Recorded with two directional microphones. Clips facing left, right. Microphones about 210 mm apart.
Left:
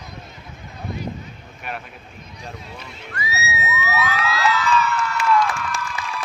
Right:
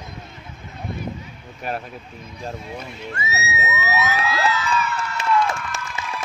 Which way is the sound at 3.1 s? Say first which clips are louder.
Left 1 dB; 25° right (ahead or behind).